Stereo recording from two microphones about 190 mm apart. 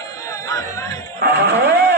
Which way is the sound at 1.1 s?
60° right (ahead or behind).